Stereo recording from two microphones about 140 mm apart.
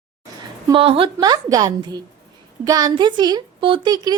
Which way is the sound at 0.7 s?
40° right (ahead or behind).